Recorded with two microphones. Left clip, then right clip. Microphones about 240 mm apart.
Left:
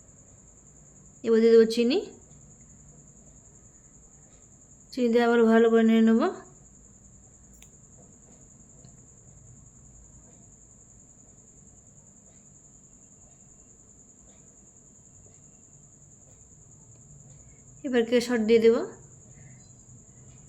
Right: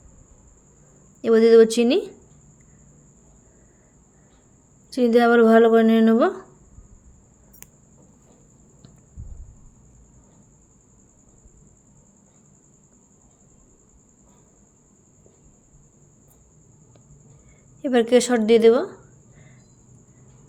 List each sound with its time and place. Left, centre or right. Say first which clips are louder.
1.2 s speech: right 5 dB; right
4.9 s speech: right 6 dB; right
17.8 s speech: right 7 dB; right